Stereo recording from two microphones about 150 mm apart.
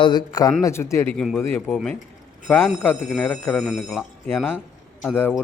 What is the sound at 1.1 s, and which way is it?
Speech, centre (ahead or behind).